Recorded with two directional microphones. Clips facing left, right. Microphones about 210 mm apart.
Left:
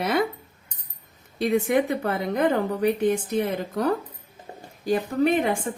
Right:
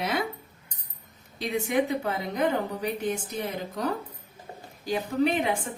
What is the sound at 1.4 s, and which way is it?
A woman's voice, 55° left (ahead or behind).